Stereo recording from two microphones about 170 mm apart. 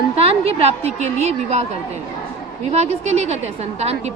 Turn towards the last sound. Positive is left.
turn(degrees=-40)  # may be behind; listen again after turning